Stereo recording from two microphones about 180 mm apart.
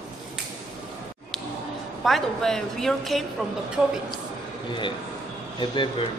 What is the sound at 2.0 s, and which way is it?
A woman's voice, centre (ahead or behind).